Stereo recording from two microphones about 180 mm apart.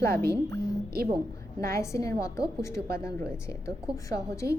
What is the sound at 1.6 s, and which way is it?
A woman's voice, 15° left (ahead or behind).